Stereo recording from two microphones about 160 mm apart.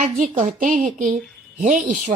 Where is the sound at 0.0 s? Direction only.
55° right (ahead or behind).